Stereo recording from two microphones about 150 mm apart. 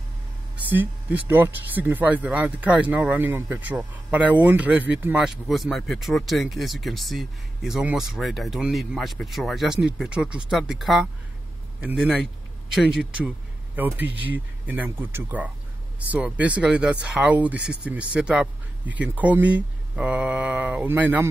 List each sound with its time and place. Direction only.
0.7 s speech: 15° right (ahead or behind)